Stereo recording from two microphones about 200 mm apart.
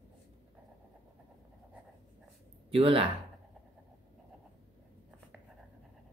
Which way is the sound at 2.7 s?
30° right (ahead or behind).